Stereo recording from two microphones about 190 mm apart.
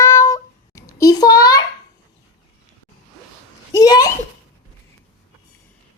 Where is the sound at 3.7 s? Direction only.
20° left (ahead or behind).